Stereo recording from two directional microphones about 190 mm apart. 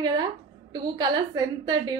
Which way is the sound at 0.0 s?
25° right (ahead or behind).